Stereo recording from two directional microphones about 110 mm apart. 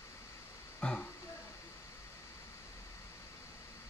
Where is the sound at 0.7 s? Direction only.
10° left (ahead or behind).